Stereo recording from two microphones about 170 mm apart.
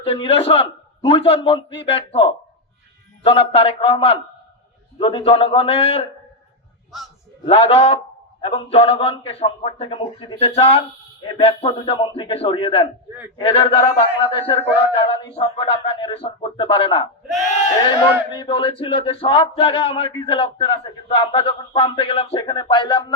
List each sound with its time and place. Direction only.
0.0 s speech: 35° left (ahead or behind)
7.4 s speech: 35° left (ahead or behind)
18.3 s speech: 30° left (ahead or behind)